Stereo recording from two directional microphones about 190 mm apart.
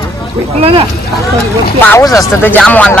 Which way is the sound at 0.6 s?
30° right (ahead or behind).